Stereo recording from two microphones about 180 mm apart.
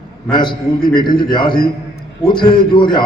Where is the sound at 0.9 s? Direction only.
25° left (ahead or behind).